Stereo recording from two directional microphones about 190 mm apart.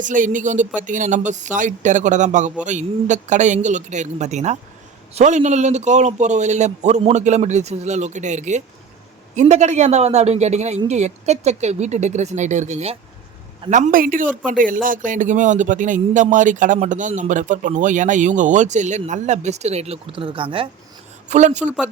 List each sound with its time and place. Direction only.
0.0 s speech: 45° right (ahead or behind); by 20.7 s 25° right (ahead or behind)
21.2 s speech: 35° right (ahead or behind)